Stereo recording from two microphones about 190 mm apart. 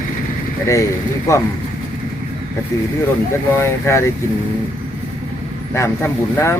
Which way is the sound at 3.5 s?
15° left (ahead or behind).